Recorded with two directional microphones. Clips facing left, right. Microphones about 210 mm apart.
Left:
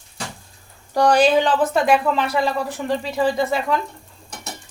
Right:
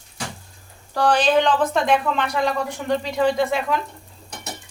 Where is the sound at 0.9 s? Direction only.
10° left (ahead or behind).